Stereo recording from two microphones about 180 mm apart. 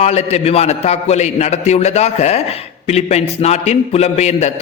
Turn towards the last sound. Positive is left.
turn(degrees=40)  # may be behind; listen again after turning